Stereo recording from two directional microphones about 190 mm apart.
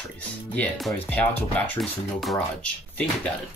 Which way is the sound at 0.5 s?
5° left (ahead or behind).